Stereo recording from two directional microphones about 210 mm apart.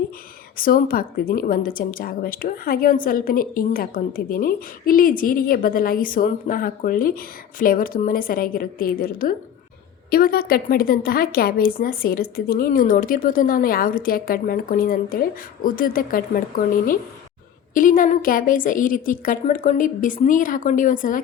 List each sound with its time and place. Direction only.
0.5 s a woman's voice: 45° left (ahead or behind)
17.7 s a woman's voice: 40° left (ahead or behind)